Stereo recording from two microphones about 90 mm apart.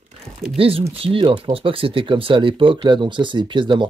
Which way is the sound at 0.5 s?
90° right.